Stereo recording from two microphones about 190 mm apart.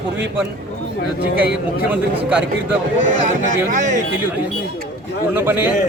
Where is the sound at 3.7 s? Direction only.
40° right (ahead or behind).